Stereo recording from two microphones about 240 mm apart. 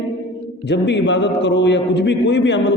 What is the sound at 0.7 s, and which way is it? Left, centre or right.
A man's voice, left.